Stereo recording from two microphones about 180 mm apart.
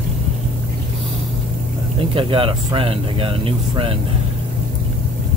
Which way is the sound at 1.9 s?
30° right (ahead or behind).